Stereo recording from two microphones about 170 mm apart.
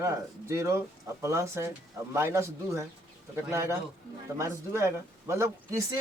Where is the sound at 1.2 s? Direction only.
15° right (ahead or behind).